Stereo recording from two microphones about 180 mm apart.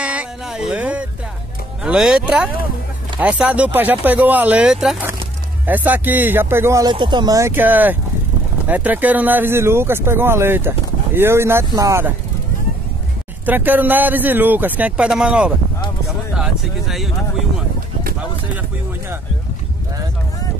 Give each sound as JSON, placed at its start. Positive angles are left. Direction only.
{"t": 0.0, "sound": "a sound", "side_deg": -5}
{"t": 1.8, "sound": "speech", "side_deg": -5}
{"t": 6.9, "sound": "speech", "side_deg": -25}
{"t": 13.5, "sound": "speech", "side_deg": -10}